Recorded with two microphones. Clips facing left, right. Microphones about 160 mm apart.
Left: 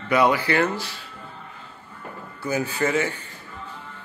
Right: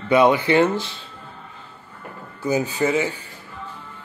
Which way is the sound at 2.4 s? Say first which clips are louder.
Right 3 dB; 15° right (ahead or behind).